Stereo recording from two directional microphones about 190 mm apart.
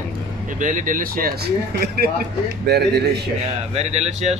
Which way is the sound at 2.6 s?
60° right (ahead or behind).